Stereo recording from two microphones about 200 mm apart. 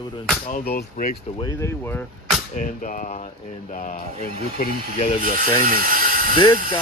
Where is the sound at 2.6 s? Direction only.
40° left (ahead or behind).